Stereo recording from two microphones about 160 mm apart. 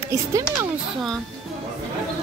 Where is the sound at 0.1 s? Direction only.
20° right (ahead or behind).